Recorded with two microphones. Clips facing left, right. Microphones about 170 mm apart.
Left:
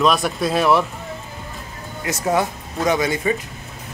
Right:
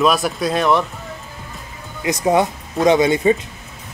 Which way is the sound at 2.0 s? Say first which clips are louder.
Right 4 dB; 20° right (ahead or behind).